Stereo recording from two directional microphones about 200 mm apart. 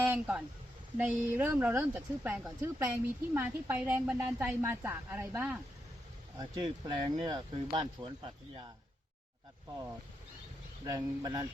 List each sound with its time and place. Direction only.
0.0 s a woman's voice: 10° right (ahead or behind)
6.4 s speech: 20° right (ahead or behind)
10.8 s speech: 20° right (ahead or behind)